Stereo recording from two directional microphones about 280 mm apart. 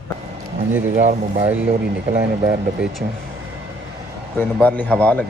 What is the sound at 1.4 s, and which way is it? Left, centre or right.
Speech, centre.